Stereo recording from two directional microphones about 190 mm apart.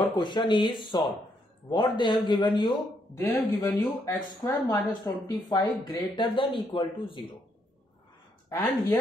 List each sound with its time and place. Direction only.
0.1 s speech: 25° left (ahead or behind)
3.2 s speech: 10° left (ahead or behind)
8.5 s speech: 15° left (ahead or behind)